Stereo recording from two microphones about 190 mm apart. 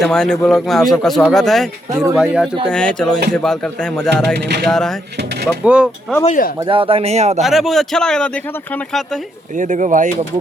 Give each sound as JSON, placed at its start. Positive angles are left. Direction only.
{"t": 0.0, "sound": "speech", "side_deg": 5}
{"t": 4.4, "sound": "speech", "side_deg": -60}
{"t": 4.6, "sound": "speech", "side_deg": 5}
{"t": 6.2, "sound": "speech", "side_deg": 45}
{"t": 6.7, "sound": "speech", "side_deg": -30}
{"t": 7.4, "sound": "speech", "side_deg": 0}
{"t": 9.6, "sound": "speech", "side_deg": -40}